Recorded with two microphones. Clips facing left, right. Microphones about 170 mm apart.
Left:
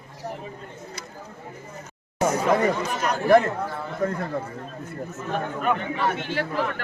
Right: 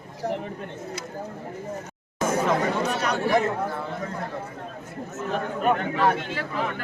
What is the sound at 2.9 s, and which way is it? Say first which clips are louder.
Speech: even; 70° right (ahead or behind).